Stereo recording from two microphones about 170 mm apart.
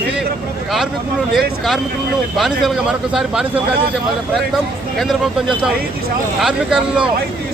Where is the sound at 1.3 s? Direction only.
Centre (ahead or behind).